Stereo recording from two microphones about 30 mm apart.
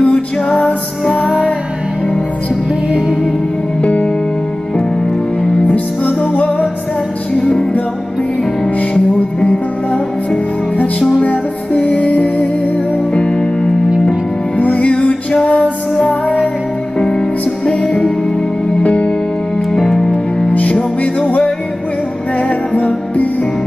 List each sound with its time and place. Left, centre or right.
0.0 s music: left
3.8 s music: left
6.0 s music: left
8.9 s music: left
13.1 s music: left
14.6 s music: left
17.0 s music: left
18.8 s music: left
19.8 s music: centre
20.1 s music: left
22.8 s music: left